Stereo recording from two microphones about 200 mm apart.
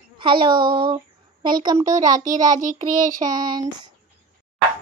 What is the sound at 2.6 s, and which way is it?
Child singing, 40° right (ahead or behind).